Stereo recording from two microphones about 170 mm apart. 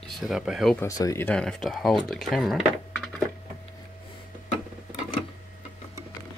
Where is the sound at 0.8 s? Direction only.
20° left (ahead or behind); by 2.6 s centre (ahead or behind).